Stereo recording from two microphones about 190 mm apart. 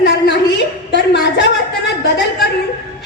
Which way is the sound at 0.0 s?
65° left (ahead or behind).